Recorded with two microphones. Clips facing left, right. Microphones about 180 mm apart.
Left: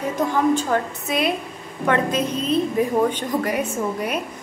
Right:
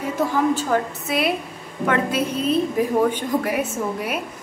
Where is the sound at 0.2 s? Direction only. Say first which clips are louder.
Left 1 dB; 5° right (ahead or behind).